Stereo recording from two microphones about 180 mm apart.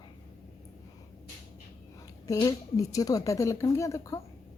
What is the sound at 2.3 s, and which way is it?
A woman's voice, 20° left (ahead or behind).